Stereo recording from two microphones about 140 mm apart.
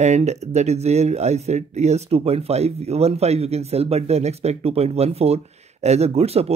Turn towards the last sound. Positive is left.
turn(degrees=-50)  # may be behind; listen again after turning